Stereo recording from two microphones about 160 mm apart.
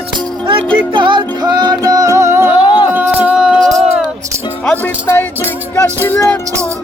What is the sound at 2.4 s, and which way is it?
Music, 30° left (ahead or behind).